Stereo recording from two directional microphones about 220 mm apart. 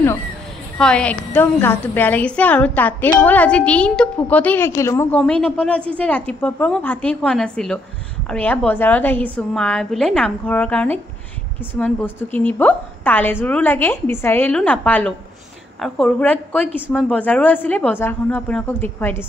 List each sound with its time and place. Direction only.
0.7 s a woman's voice: 5° left (ahead or behind)